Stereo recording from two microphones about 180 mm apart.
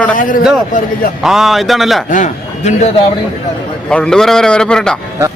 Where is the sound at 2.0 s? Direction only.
45° left (ahead or behind).